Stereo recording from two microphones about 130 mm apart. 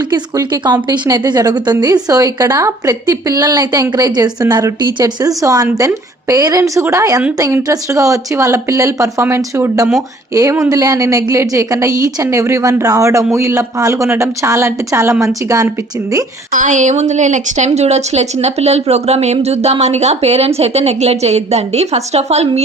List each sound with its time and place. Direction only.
0.1 s a woman's voice: 30° right (ahead or behind)
16.5 s a woman's voice: 85° right; by 22.4 s 55° right (ahead or behind)